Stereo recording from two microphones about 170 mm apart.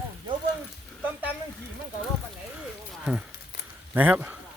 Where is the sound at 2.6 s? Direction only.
5° right (ahead or behind).